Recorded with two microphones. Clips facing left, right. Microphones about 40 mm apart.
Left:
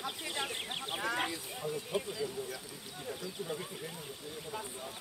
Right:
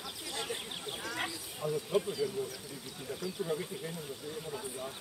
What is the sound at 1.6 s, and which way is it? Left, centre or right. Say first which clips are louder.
Speech: right 4 dB; right.